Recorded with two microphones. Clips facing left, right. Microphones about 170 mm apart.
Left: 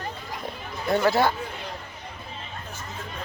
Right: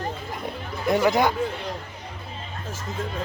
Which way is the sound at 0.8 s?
15° right (ahead or behind).